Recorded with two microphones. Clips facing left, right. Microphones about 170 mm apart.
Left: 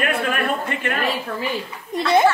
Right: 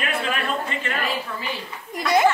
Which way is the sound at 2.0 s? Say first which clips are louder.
Left 3 dB; 25° left (ahead or behind).